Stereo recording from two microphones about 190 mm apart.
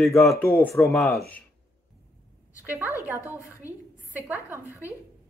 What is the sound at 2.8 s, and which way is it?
Speech, 15° left (ahead or behind).